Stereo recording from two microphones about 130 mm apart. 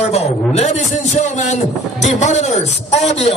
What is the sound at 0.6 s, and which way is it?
A man's voice, 60° left (ahead or behind).